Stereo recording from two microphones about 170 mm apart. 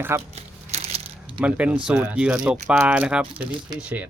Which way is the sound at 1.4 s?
10° right (ahead or behind).